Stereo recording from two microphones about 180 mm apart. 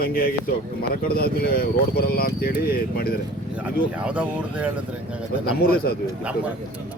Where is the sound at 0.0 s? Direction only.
55° left (ahead or behind).